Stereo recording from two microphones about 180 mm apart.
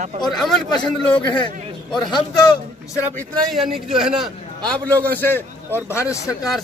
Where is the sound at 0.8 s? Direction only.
5° left (ahead or behind).